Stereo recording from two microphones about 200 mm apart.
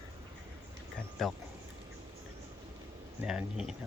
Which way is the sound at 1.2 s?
Centre (ahead or behind).